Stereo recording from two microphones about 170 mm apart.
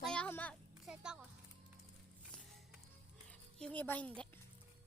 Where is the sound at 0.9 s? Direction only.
5° right (ahead or behind).